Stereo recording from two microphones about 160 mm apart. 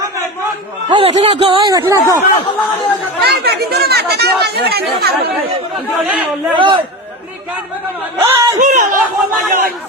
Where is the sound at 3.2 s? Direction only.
80° right.